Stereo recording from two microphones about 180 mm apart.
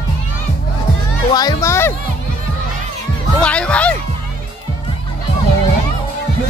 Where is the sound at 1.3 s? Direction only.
20° left (ahead or behind).